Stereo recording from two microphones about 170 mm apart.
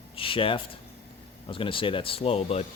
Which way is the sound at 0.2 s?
30° left (ahead or behind).